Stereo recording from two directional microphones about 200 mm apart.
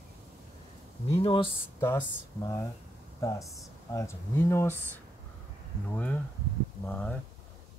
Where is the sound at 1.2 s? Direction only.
25° left (ahead or behind).